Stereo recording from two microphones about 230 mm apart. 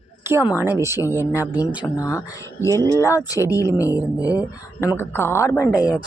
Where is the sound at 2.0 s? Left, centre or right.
Centre.